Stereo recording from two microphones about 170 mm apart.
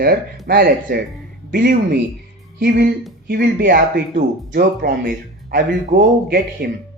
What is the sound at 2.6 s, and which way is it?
A man's voice, 65° right (ahead or behind).